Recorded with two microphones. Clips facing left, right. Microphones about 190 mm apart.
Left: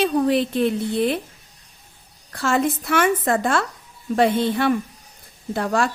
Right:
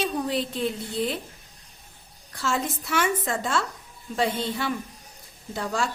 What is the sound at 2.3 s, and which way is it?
A woman's voice, 60° left (ahead or behind).